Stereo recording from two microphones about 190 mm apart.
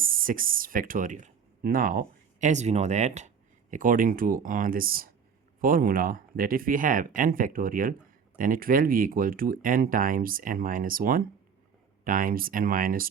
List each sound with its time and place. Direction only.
0.0 s speech: 45° right (ahead or behind)